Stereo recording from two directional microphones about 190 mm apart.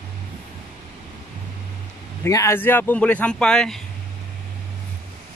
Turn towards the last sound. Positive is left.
turn(degrees=5)  # may be behind; listen again after turning